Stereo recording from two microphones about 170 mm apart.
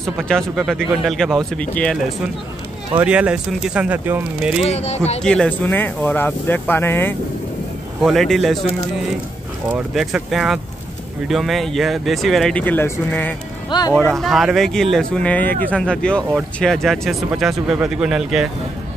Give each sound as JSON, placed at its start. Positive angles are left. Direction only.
{"t": 0.0, "sound": "speech", "side_deg": 0}
{"t": 3.0, "sound": "speech", "side_deg": -5}
{"t": 4.6, "sound": "speech", "side_deg": 40}
{"t": 5.2, "sound": "speech", "side_deg": 5}
{"t": 8.0, "sound": "speech", "side_deg": 0}
{"t": 9.9, "sound": "speech", "side_deg": 0}
{"t": 13.7, "sound": "speech", "side_deg": 25}
{"t": 13.9, "sound": "speech", "side_deg": 0}